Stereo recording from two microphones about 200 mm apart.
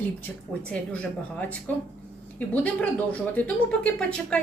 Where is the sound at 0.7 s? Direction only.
5° left (ahead or behind).